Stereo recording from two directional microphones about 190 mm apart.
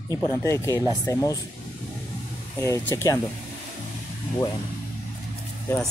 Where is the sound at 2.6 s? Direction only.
15° left (ahead or behind).